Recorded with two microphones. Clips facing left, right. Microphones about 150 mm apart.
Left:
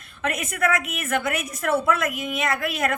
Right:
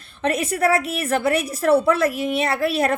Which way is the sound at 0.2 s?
30° right (ahead or behind).